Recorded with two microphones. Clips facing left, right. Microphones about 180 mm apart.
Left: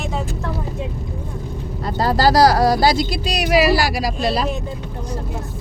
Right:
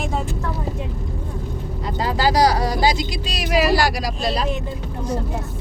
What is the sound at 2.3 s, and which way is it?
Speech, 90° left.